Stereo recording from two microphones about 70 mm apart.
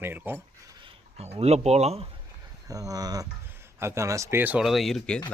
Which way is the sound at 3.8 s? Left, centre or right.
Right.